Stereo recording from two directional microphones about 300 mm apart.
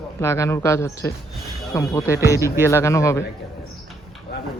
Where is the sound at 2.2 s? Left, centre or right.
Centre.